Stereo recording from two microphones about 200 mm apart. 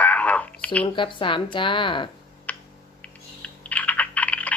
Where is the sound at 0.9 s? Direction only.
25° left (ahead or behind).